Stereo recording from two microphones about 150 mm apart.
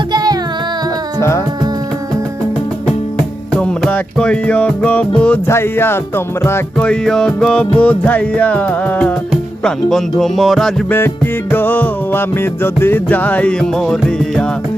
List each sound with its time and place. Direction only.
0.1 s music: 25° right (ahead or behind)
3.5 s music: 5° left (ahead or behind)
11.5 s music: 10° left (ahead or behind)